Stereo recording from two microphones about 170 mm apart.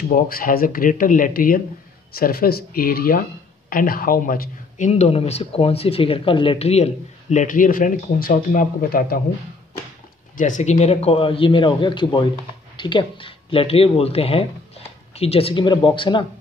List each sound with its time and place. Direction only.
0.1 s speech: 55° left (ahead or behind)
10.3 s speech: 45° left (ahead or behind); by 16.3 s 30° left (ahead or behind)